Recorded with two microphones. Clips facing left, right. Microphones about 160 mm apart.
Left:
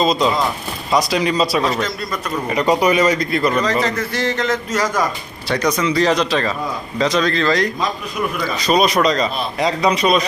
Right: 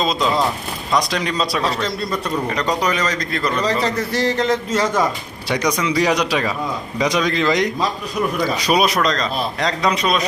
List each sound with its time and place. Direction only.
0.0 s a man's voice: centre (ahead or behind)
3.6 s speech: 30° right (ahead or behind)
5.5 s a man's voice: 15° right (ahead or behind); by 10.2 s centre (ahead or behind)